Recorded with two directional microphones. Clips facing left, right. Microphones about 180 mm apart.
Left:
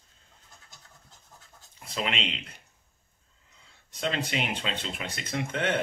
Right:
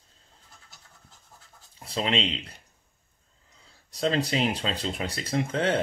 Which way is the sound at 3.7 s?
35° right (ahead or behind).